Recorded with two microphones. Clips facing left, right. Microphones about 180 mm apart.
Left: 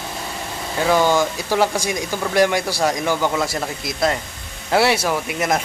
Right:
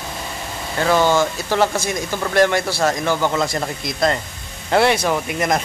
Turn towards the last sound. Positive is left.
turn(degrees=5)  # may be behind; listen again after turning